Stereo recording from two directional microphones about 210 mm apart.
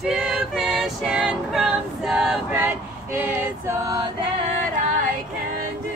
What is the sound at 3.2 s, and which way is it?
Choir, 15° right (ahead or behind).